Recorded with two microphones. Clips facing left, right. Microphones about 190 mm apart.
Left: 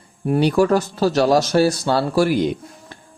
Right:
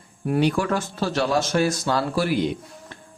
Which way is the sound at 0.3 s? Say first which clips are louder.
Left 5 dB; 35° left (ahead or behind).